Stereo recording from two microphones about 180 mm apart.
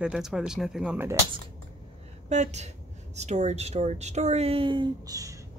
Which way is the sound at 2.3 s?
40° right (ahead or behind).